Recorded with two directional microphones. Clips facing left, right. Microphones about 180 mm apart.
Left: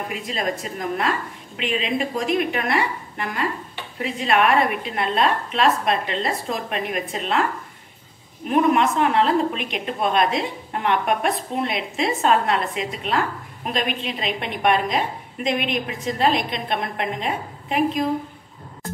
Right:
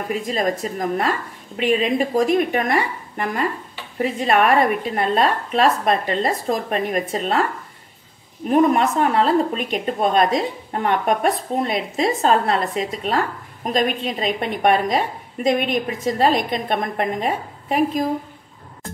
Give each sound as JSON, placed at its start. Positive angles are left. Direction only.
{"t": 0.1, "sound": "a woman's voice", "side_deg": -45}
{"t": 8.5, "sound": "a woman's voice", "side_deg": -40}